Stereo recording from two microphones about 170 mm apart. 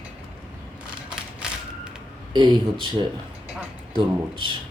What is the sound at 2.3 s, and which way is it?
Speech, 25° right (ahead or behind).